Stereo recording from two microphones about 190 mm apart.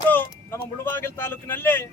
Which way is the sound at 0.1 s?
10° left (ahead or behind).